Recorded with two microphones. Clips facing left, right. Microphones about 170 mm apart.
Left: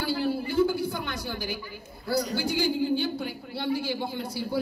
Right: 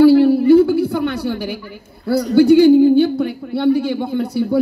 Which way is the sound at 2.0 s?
60° right (ahead or behind).